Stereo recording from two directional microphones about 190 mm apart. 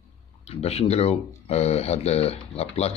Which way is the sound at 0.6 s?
35° left (ahead or behind).